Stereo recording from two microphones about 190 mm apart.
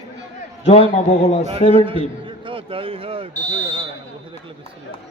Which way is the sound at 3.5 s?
25° right (ahead or behind).